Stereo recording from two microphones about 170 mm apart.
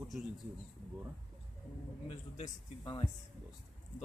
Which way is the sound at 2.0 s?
40° left (ahead or behind).